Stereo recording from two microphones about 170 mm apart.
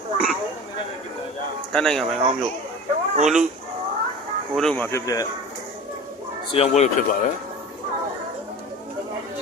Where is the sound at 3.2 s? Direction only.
5° right (ahead or behind).